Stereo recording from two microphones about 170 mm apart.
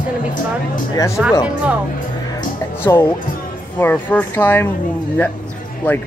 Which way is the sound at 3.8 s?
10° left (ahead or behind).